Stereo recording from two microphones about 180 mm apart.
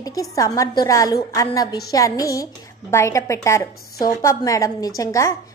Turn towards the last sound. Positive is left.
turn(degrees=15)  # may be behind; listen again after turning